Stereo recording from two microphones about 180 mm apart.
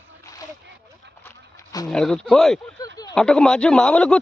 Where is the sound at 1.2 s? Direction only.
15° left (ahead or behind).